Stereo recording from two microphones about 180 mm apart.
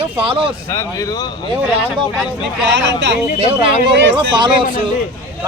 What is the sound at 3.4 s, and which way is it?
A man's voice, 30° right (ahead or behind).